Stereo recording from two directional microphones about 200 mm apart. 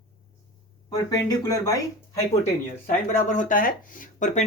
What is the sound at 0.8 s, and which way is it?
Speech, 20° left (ahead or behind).